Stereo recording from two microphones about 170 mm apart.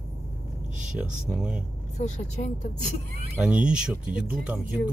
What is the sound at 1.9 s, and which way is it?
Speech, 40° left (ahead or behind).